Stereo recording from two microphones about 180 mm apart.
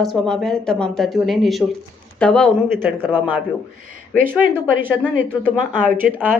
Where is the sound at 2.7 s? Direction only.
10° right (ahead or behind).